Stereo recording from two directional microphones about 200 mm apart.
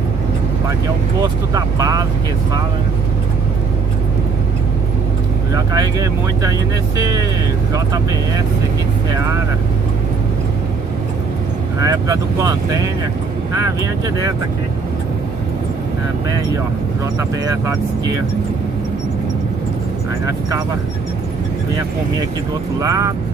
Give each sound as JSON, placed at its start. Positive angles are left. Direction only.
{"t": 1.5, "sound": "speech", "side_deg": -15}
{"t": 5.5, "sound": "speech", "side_deg": -15}
{"t": 11.8, "sound": "speech", "side_deg": -15}
{"t": 17.5, "sound": "speech", "side_deg": -15}
{"t": 22.8, "sound": "speech", "side_deg": -15}